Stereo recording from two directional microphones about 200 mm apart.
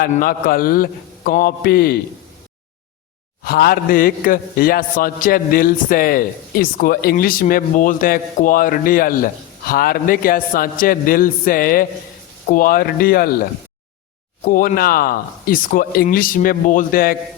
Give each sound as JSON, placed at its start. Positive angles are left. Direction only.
{"t": 0.0, "sound": "a man's voice", "side_deg": 45}
{"t": 3.4, "sound": "a man's voice", "side_deg": 50}
{"t": 14.4, "sound": "a man's voice", "side_deg": 45}